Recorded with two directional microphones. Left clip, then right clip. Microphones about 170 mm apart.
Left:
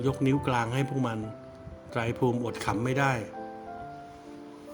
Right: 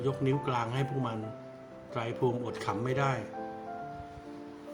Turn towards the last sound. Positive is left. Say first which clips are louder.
# left 4 dB
turn(degrees=45)  # may be behind; listen again after turning